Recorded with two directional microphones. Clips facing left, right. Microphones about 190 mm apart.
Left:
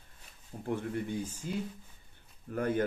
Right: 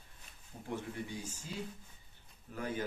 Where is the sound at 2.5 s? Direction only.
55° left (ahead or behind).